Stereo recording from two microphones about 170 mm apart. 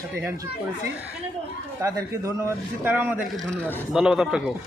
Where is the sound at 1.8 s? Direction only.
20° right (ahead or behind).